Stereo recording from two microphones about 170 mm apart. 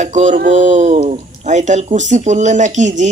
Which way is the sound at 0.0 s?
45° right (ahead or behind).